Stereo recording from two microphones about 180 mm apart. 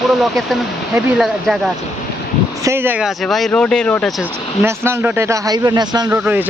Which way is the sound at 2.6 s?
15° right (ahead or behind).